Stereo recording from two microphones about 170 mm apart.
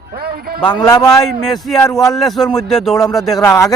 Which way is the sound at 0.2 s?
65° right (ahead or behind).